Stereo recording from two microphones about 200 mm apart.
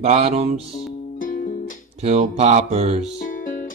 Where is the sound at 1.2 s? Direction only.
45° left (ahead or behind).